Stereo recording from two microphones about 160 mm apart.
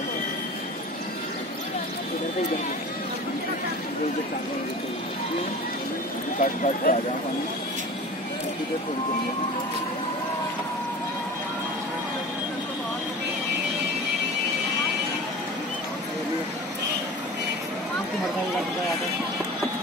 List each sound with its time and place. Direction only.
6.4 s speech: 55° left (ahead or behind)